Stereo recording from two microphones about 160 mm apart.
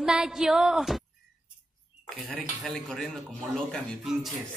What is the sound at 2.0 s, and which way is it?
Speech, centre (ahead or behind).